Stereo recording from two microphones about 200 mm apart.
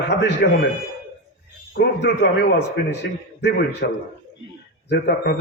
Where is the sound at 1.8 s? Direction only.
55° left (ahead or behind).